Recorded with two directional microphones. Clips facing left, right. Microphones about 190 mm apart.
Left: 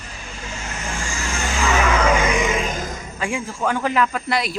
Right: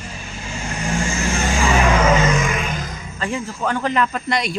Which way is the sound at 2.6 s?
40° left (ahead or behind).